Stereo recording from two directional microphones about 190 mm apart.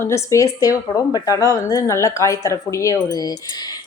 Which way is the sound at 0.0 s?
15° left (ahead or behind).